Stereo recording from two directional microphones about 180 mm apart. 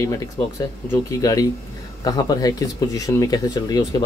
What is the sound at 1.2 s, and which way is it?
Speech, 20° left (ahead or behind).